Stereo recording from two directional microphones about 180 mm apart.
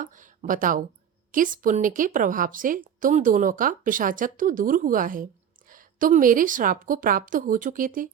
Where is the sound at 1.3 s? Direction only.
50° right (ahead or behind).